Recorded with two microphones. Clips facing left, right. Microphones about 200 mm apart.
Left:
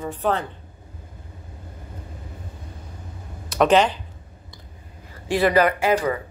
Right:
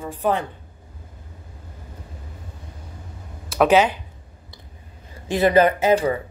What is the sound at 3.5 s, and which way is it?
Speech, 5° right (ahead or behind).